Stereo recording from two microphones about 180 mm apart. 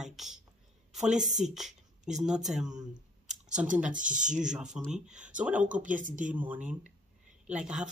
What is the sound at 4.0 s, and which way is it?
Speech, 45° right (ahead or behind).